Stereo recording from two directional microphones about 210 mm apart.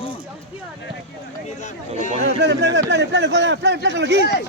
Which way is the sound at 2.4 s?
55° right (ahead or behind).